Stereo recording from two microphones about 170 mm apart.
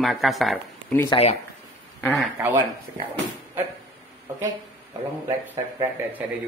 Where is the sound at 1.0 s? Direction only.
35° left (ahead or behind).